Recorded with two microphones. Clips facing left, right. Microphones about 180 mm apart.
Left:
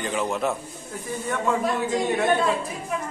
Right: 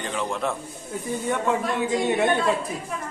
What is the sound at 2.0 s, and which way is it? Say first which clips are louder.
Speech: right 3 dB; 20° right (ahead or behind).